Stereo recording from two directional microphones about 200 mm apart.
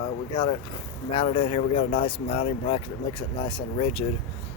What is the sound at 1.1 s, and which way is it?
Speech, 30° left (ahead or behind).